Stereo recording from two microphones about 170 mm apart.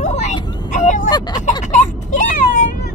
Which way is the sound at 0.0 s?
45° left (ahead or behind).